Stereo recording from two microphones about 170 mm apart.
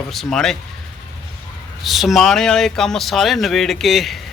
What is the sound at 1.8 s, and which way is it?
Speech, centre (ahead or behind).